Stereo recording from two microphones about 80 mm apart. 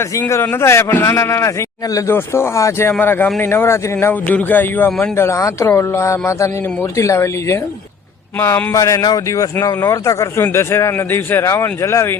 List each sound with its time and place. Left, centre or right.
0.2 s speech: left
3.0 s speech: left
4.3 s speech: left
5.1 s speech: left